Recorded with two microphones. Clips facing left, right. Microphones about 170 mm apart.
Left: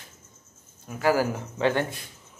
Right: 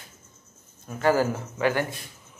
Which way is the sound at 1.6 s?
25° left (ahead or behind).